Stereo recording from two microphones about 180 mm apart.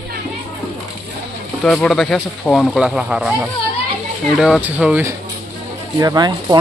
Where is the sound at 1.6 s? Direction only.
5° left (ahead or behind).